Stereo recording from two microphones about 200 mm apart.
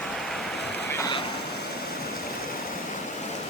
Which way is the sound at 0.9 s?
15° left (ahead or behind).